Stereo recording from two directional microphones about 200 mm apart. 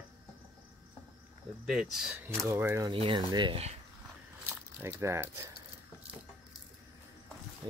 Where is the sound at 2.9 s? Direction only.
25° right (ahead or behind).